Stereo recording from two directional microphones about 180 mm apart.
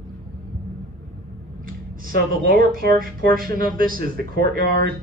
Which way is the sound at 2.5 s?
55° right (ahead or behind).